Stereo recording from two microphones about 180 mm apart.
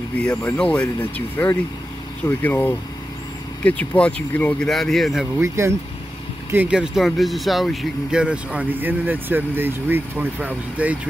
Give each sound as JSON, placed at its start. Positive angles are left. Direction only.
{"t": 0.2, "sound": "speech", "side_deg": 5}
{"t": 5.4, "sound": "speech", "side_deg": -15}